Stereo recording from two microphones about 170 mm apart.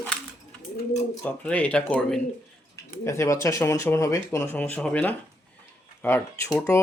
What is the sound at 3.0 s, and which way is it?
Speech, 15° left (ahead or behind).